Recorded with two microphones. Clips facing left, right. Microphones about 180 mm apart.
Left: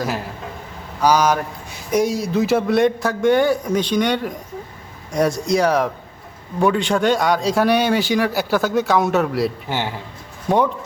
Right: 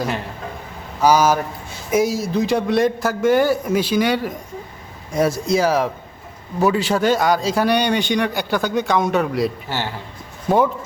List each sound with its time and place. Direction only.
1.0 s a man's voice: 5° right (ahead or behind)
9.6 s a man's voice: 15° left (ahead or behind)
10.5 s a man's voice: centre (ahead or behind)